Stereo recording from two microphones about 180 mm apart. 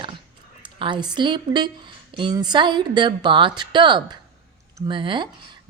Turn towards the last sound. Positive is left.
turn(degrees=-25)  # may be behind; listen again after turning